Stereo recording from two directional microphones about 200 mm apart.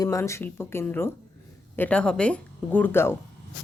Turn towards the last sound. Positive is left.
turn(degrees=10)  # may be behind; listen again after turning